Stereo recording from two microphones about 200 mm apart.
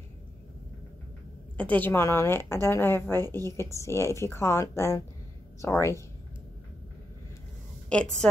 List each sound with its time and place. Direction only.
1.6 s a woman's voice: 10° left (ahead or behind)
7.9 s a woman's voice: 5° left (ahead or behind)